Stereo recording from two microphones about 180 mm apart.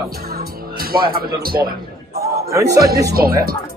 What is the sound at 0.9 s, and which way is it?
Speech, 55° right (ahead or behind).